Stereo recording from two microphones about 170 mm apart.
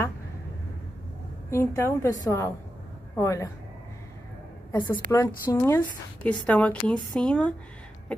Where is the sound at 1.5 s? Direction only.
15° left (ahead or behind).